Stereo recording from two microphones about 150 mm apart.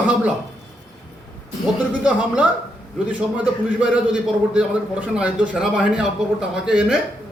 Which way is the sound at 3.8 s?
5° right (ahead or behind).